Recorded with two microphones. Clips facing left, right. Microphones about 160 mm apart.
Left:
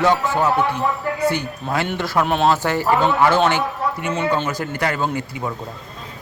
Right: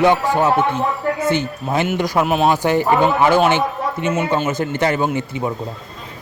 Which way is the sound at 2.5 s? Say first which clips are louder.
Right 3 dB; 15° right (ahead or behind).